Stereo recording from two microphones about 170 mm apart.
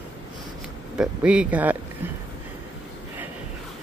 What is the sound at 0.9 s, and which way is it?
Speech, 5° right (ahead or behind).